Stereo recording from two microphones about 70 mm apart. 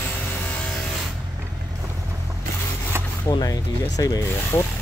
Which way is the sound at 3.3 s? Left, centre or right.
Left.